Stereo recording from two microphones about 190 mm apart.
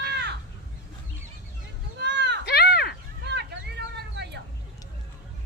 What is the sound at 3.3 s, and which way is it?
Vehicle, 60° right (ahead or behind).